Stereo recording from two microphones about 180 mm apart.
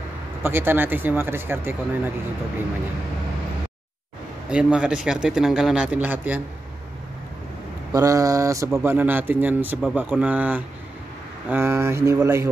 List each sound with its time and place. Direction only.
0.4 s speech: 10° right (ahead or behind)
4.5 s a man's voice: 5° right (ahead or behind)
7.9 s speech: 20° right (ahead or behind)